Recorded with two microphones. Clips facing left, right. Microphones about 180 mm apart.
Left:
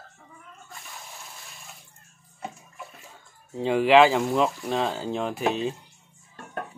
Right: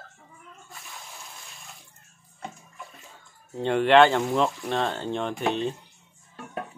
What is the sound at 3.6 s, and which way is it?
Speech, centre (ahead or behind).